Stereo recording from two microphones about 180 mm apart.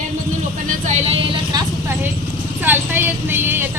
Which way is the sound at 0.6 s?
40° right (ahead or behind).